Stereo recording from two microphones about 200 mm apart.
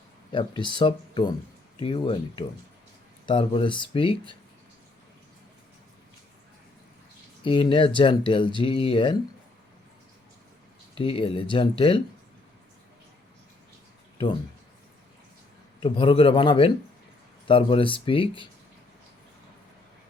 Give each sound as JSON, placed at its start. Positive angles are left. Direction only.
{"t": 0.3, "sound": "speech", "side_deg": 25}
{"t": 7.4, "sound": "speech", "side_deg": 25}
{"t": 10.9, "sound": "speech", "side_deg": 25}
{"t": 15.8, "sound": "speech", "side_deg": 25}